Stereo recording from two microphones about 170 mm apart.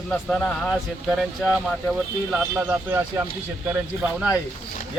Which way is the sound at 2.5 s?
10° right (ahead or behind).